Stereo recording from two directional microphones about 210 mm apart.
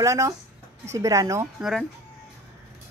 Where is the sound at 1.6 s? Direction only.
Centre (ahead or behind).